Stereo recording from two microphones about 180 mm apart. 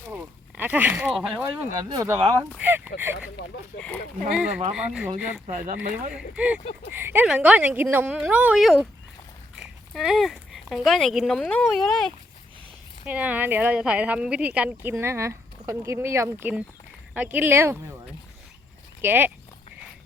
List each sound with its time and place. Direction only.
0.1 s speech: 10° right (ahead or behind)
1.8 s speech: 20° right (ahead or behind)
4.3 s a woman's voice: 5° right (ahead or behind)
19.0 s a woman's voice: 10° right (ahead or behind)